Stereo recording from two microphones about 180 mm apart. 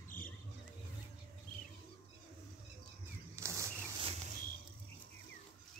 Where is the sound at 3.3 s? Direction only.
15° right (ahead or behind).